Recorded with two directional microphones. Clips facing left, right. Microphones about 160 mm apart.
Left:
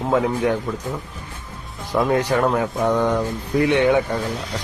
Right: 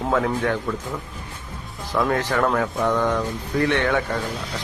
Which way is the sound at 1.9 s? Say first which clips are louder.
Left 3 dB; 20° left (ahead or behind).